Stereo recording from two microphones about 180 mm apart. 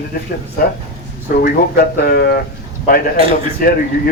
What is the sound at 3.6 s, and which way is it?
Speech, 55° left (ahead or behind).